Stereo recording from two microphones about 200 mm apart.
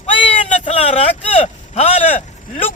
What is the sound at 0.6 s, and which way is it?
Speech, 30° left (ahead or behind).